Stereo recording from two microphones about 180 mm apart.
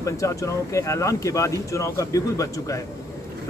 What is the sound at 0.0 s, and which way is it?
Speech, 15° left (ahead or behind).